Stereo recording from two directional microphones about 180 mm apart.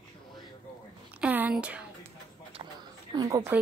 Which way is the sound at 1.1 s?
10° right (ahead or behind).